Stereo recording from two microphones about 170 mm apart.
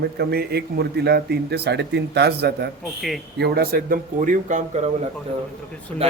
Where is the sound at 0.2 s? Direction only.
70° right (ahead or behind); by 4.9 s 45° right (ahead or behind).